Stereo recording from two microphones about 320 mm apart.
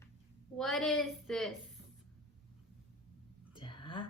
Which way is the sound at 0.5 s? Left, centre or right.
Centre.